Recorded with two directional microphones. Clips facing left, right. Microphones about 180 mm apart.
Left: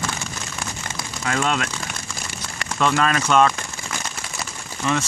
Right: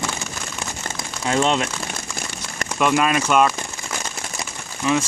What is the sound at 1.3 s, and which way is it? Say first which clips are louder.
Speech: right 4 dB; 25° right (ahead or behind).